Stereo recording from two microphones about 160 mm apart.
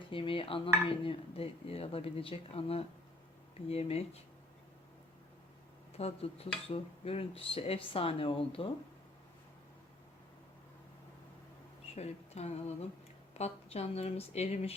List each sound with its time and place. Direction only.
0.1 s dishes: 35° left (ahead or behind)
6.0 s dishes: 40° left (ahead or behind)
11.9 s a sound: 40° left (ahead or behind)
13.3 s dishes: 40° left (ahead or behind)